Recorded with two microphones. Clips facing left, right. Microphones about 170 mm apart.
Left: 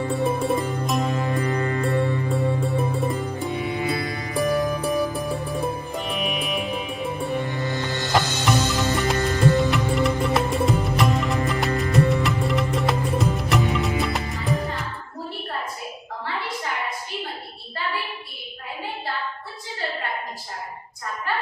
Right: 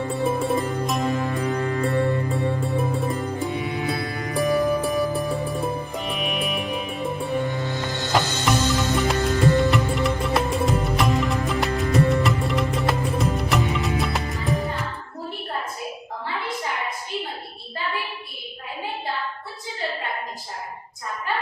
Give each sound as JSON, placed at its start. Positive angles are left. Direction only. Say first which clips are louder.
{"t": 0.1, "sound": "music", "louder": "even", "side_deg": 0}